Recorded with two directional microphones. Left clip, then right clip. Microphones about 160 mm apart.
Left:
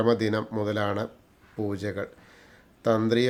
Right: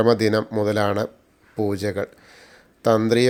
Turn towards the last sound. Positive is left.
turn(degrees=-25)  # may be behind; listen again after turning